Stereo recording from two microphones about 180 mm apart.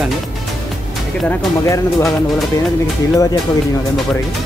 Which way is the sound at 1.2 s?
Centre (ahead or behind).